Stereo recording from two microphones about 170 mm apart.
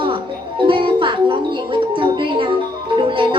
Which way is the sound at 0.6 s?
30° right (ahead or behind).